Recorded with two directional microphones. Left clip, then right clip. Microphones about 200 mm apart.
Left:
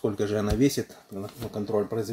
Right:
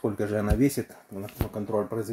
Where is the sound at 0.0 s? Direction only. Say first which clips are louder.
Left 1 dB; 20° right (ahead or behind).